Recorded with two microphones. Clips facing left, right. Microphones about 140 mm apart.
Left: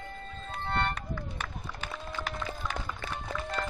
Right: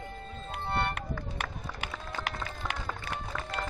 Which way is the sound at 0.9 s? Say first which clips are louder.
Right 1 dB; 70° right (ahead or behind).